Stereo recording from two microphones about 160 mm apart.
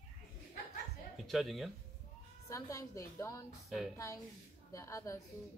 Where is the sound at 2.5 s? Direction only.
20° left (ahead or behind).